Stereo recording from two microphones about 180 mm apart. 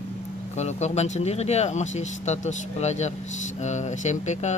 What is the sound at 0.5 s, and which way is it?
Speech, 40° left (ahead or behind).